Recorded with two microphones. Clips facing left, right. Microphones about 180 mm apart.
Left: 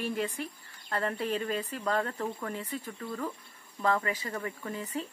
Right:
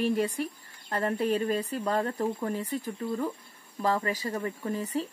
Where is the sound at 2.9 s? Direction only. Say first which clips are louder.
Right 6 dB; 25° right (ahead or behind).